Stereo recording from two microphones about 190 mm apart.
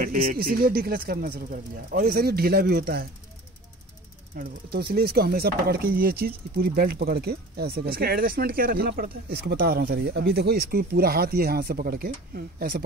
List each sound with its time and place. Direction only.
0.0 s speech: 45° right (ahead or behind)
4.4 s speech: 55° right (ahead or behind)